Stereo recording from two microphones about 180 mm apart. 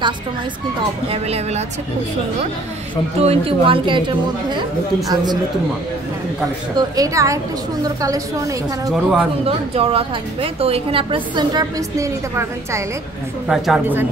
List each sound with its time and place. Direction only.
1.0 s a woman's voice: 35° right (ahead or behind)
3.2 s speech: 35° right (ahead or behind)
7.0 s a woman's voice: 15° right (ahead or behind)
8.9 s speech: 5° right (ahead or behind)
9.4 s a woman's voice: 35° right (ahead or behind); by 12.8 s 15° right (ahead or behind)
13.5 s speech: 5° right (ahead or behind)